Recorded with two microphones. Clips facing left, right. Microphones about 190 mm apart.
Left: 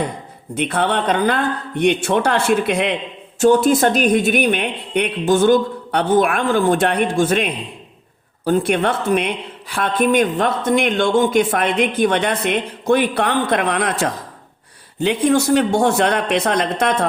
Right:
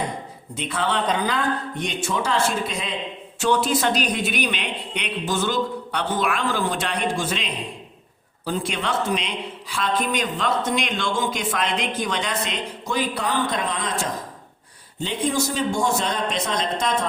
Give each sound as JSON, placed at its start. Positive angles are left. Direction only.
{"t": 0.5, "sound": "a woman's voice", "side_deg": 60}
{"t": 3.3, "sound": "a woman's voice", "side_deg": 45}